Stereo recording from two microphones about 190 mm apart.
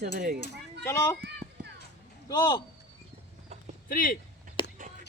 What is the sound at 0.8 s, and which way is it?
Speech, 15° left (ahead or behind).